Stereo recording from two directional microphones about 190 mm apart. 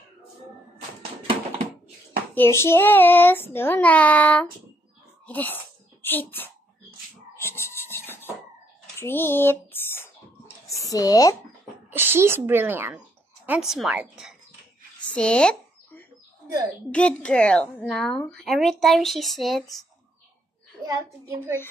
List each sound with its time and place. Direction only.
2.3 s a child's voice: 10° left (ahead or behind)
7.3 s music: 15° left (ahead or behind)
8.9 s a sound: 10° left (ahead or behind)
10.7 s speech: 15° left (ahead or behind)
11.9 s a woman's voice: 10° right (ahead or behind)
15.1 s a sound: 5° left (ahead or behind)
16.9 s a woman's voice: 5° left (ahead or behind)